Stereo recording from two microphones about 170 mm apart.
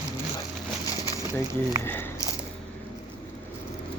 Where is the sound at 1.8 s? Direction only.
10° left (ahead or behind).